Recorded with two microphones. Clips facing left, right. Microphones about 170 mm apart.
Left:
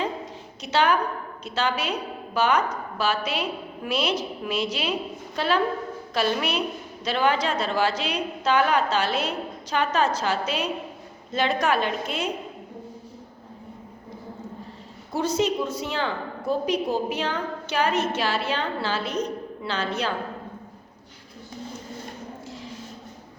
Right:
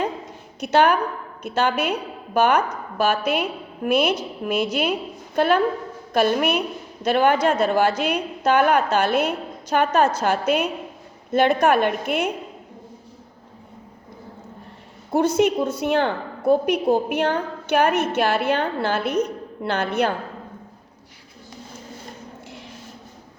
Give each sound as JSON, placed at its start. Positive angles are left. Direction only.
{"t": 0.6, "sound": "a woman's voice", "side_deg": -50}
{"t": 15.1, "sound": "a woman's voice", "side_deg": -55}
{"t": 22.4, "sound": "a sound", "side_deg": -65}